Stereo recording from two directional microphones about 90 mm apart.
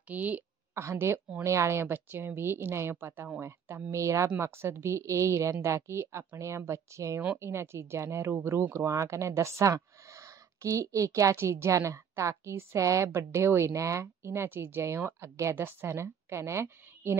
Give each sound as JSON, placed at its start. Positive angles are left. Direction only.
{"t": 0.1, "sound": "a woman's voice", "side_deg": -20}
{"t": 0.7, "sound": "speech", "side_deg": -30}